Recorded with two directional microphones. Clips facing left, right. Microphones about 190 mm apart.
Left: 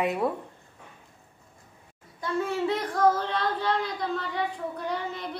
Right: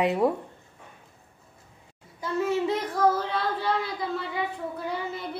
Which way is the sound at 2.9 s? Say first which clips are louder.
Left 1 dB; 5° right (ahead or behind).